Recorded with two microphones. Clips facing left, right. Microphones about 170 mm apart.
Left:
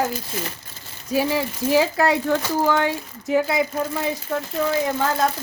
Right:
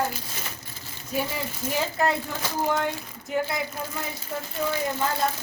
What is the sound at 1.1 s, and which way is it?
Speech, 90° left.